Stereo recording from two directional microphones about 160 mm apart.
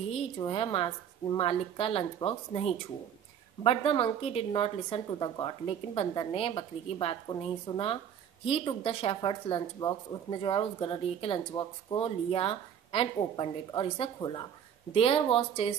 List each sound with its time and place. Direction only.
0.4 s speech: 30° left (ahead or behind)